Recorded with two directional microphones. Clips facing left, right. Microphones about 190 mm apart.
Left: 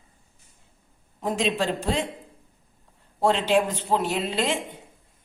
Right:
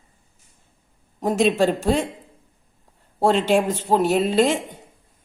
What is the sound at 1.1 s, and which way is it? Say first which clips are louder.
Speech: right 7 dB; 45° right (ahead or behind).